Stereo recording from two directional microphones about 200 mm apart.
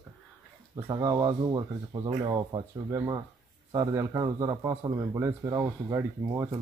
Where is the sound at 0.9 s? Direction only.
20° right (ahead or behind).